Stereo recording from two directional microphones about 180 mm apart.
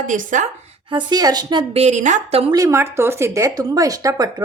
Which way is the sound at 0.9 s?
25° right (ahead or behind).